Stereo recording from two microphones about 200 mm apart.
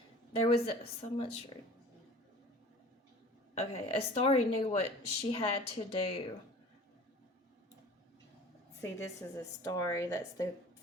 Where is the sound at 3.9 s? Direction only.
30° left (ahead or behind).